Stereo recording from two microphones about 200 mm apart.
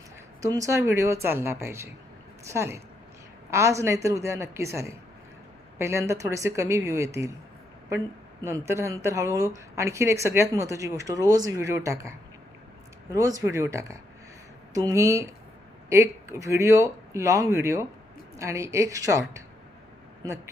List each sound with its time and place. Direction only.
0.4 s a woman's voice: 15° right (ahead or behind)
8.4 s speech: 15° right (ahead or behind)